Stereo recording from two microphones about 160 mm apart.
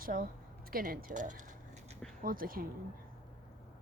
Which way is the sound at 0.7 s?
60° right (ahead or behind).